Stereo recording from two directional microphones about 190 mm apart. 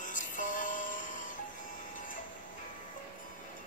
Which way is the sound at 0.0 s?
40° left (ahead or behind).